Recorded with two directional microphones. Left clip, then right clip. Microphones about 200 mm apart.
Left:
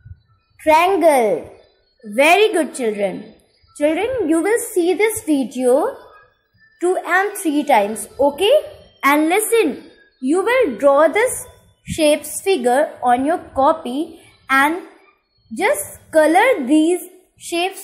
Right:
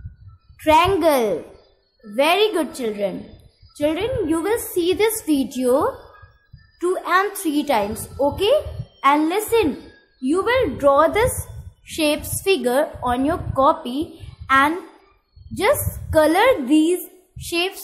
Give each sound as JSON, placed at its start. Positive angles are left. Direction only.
{"t": 0.7, "sound": "a woman's voice", "side_deg": -5}
{"t": 9.0, "sound": "a woman's voice", "side_deg": 10}